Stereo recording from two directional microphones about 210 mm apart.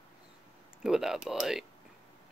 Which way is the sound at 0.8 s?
Centre (ahead or behind).